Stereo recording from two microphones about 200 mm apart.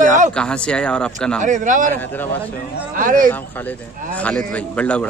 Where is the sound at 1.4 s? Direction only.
40° right (ahead or behind).